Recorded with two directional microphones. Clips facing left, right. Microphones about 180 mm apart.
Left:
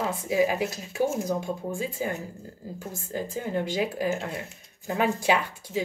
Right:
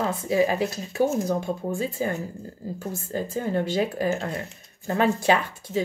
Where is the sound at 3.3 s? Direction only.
10° left (ahead or behind).